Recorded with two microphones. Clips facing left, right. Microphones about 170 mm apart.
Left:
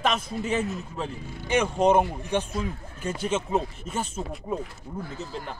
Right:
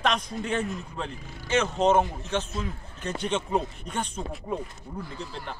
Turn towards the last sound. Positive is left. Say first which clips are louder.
# left 2 dB
turn(degrees=45)  # may be behind; listen again after turning